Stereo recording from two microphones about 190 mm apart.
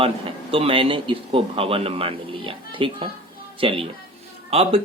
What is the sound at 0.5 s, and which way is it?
Speech, 30° right (ahead or behind).